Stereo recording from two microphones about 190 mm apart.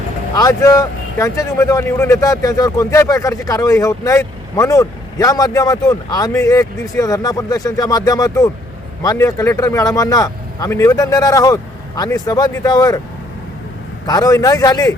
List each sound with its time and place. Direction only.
0.3 s speech: 20° left (ahead or behind)
14.1 s speech: 20° left (ahead or behind)